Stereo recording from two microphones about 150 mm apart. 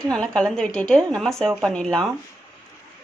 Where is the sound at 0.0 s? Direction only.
5° left (ahead or behind).